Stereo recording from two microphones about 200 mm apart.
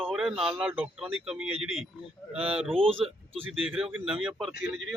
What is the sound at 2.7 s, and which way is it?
Speech, 25° right (ahead or behind).